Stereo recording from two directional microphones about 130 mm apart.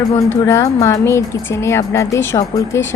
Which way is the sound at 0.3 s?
25° left (ahead or behind).